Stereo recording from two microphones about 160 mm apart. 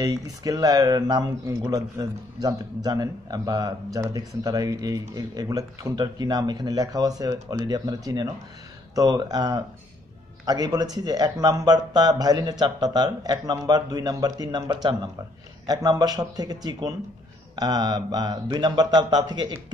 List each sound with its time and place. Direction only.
0.0 s speech: 25° right (ahead or behind)